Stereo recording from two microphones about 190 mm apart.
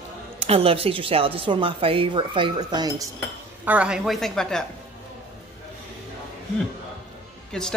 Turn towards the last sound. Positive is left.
turn(degrees=5)  # may be behind; listen again after turning